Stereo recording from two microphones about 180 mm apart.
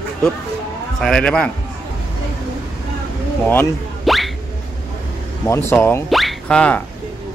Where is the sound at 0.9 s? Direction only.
5° left (ahead or behind).